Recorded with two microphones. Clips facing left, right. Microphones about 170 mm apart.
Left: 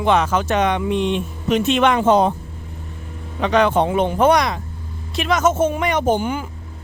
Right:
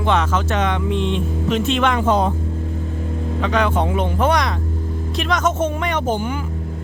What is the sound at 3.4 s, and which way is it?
Speech, 20° left (ahead or behind).